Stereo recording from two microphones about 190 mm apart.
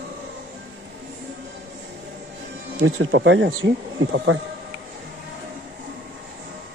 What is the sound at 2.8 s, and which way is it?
Speech, 80° right.